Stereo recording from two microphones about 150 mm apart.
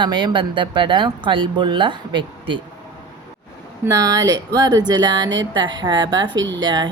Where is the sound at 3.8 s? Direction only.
25° right (ahead or behind).